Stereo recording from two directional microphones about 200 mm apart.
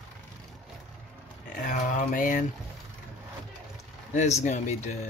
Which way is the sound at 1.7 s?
40° left (ahead or behind).